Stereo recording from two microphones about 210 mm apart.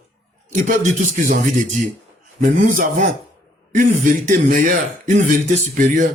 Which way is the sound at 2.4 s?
40° right (ahead or behind).